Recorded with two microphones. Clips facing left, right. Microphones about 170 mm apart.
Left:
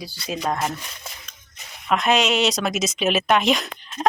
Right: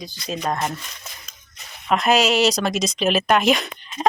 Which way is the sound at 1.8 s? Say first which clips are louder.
Right 2 dB; centre (ahead or behind).